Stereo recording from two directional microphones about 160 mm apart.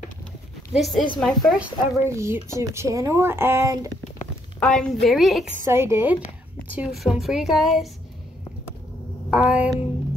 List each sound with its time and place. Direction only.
0.7 s a woman's voice: centre (ahead or behind)
2.0 s speech: 20° right (ahead or behind)
4.6 s a woman's voice: 5° left (ahead or behind)
5.6 s speech: 15° right (ahead or behind)
6.7 s a woman's voice: 5° right (ahead or behind)
9.3 s a sound: 10° right (ahead or behind)